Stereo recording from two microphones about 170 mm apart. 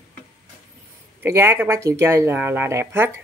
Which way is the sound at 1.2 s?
15° right (ahead or behind).